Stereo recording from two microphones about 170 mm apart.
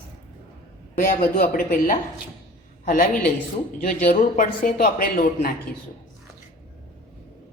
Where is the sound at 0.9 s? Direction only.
50° left (ahead or behind).